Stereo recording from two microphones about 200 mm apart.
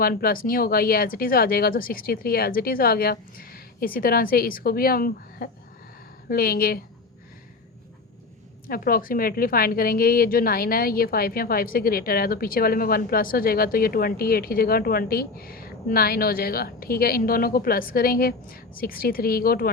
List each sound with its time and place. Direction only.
0.0 s a woman's voice: 50° left (ahead or behind)
8.6 s a woman's voice: 45° left (ahead or behind)